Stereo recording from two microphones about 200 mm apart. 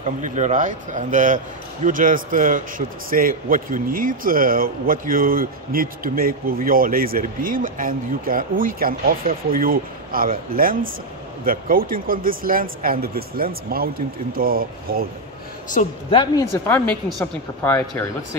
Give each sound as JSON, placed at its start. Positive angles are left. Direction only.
{"t": 0.0, "sound": "a man's voice", "side_deg": -35}
{"t": 16.1, "sound": "speech", "side_deg": 25}
{"t": 16.6, "sound": "speech", "side_deg": 15}